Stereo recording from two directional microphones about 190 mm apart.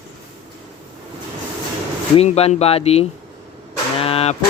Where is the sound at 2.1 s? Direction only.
30° left (ahead or behind).